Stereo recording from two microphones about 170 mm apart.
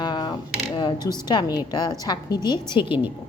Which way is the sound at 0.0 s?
25° left (ahead or behind).